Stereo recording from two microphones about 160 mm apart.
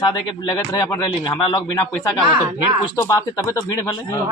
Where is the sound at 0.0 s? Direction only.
25° left (ahead or behind).